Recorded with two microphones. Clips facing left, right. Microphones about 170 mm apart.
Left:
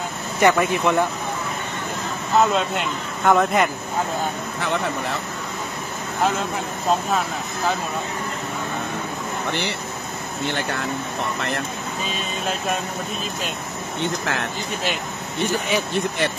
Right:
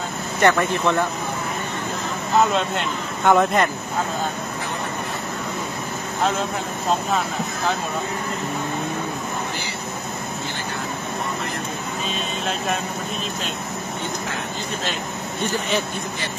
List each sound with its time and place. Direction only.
0.4 s speech: 10° left (ahead or behind)
2.4 s speech: centre (ahead or behind)
7.1 s speech: centre (ahead or behind)
14.0 s speech: 75° left (ahead or behind)
15.4 s speech: 15° left (ahead or behind)